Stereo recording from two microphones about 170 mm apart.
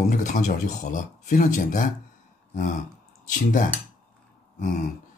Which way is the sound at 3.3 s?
50° left (ahead or behind).